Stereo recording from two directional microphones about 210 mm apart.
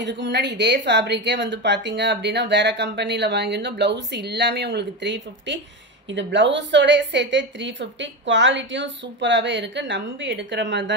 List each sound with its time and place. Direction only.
0.0 s speech: 55° right (ahead or behind)